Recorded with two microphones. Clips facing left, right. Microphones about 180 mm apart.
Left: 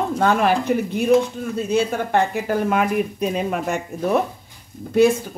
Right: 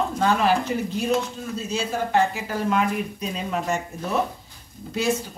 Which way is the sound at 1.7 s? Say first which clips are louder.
Left 4 dB; 55° left (ahead or behind).